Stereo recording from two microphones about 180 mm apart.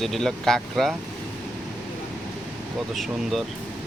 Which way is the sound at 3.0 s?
Centre (ahead or behind).